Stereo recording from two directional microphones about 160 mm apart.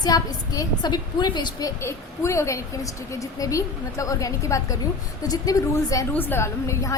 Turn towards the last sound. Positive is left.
turn(degrees=15)  # may be behind; listen again after turning